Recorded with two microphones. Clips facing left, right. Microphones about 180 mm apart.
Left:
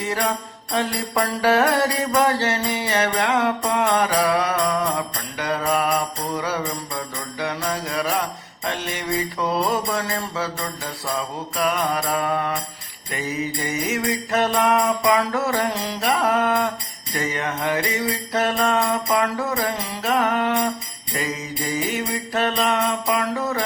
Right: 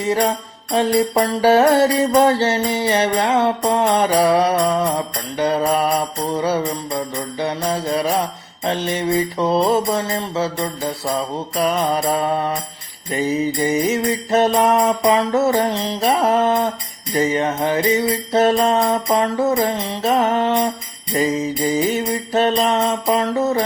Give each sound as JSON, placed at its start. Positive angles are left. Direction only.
{"t": 0.0, "sound": "music", "side_deg": -30}